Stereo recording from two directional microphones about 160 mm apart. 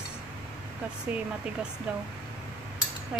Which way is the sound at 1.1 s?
10° right (ahead or behind).